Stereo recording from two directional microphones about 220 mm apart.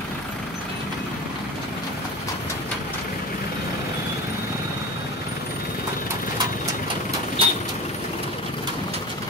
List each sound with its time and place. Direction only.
7.4 s vehicle: 25° right (ahead or behind)